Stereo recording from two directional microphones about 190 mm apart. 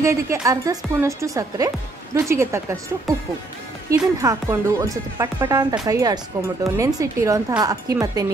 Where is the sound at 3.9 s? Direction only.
15° right (ahead or behind).